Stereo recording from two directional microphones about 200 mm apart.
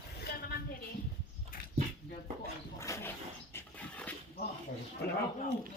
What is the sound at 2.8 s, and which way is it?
Dog, 15° left (ahead or behind).